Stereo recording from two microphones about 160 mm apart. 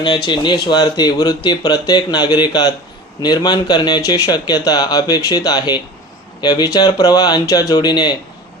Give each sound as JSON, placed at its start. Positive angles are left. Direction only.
{"t": 0.3, "sound": "speech", "side_deg": 30}